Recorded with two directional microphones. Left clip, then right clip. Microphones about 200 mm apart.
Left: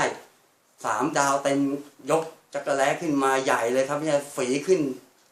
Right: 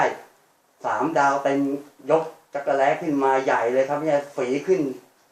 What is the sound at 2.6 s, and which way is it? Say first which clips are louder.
Speech: right 3 dB; 35° left (ahead or behind).